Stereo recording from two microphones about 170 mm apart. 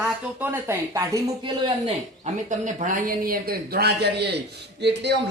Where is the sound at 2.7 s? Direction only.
50° right (ahead or behind); by 4.4 s 75° right (ahead or behind).